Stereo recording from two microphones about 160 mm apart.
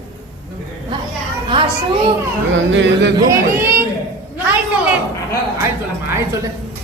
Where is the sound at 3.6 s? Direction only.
15° right (ahead or behind).